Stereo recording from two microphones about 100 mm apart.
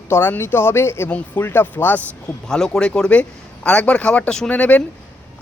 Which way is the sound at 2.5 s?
5° left (ahead or behind).